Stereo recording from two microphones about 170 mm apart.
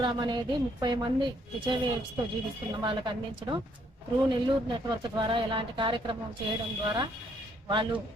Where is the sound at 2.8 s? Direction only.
30° right (ahead or behind).